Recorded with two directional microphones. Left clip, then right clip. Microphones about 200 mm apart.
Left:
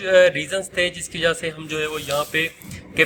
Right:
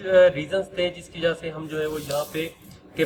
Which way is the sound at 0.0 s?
50° left (ahead or behind).